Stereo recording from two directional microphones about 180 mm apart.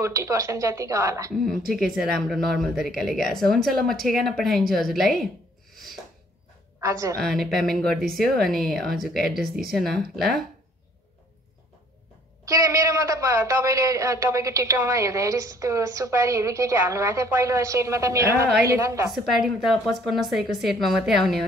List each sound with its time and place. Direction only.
0.0 s a man's voice: 15° right (ahead or behind)
1.4 s speech: centre (ahead or behind)
6.8 s a woman's voice: 15° right (ahead or behind)
7.2 s speech: centre (ahead or behind)
12.4 s a man's voice: 15° right (ahead or behind)
19.1 s speech: centre (ahead or behind)